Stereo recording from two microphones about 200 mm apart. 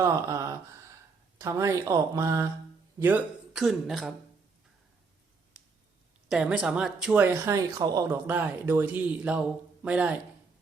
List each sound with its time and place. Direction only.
0.0 s speech: 15° right (ahead or behind)
3.0 s speech: 5° right (ahead or behind)
6.2 s speech: 5° right (ahead or behind)